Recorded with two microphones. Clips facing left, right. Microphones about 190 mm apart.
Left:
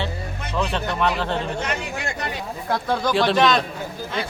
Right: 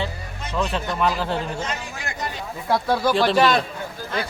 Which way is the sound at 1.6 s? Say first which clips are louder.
Left 3 dB; 65° left (ahead or behind).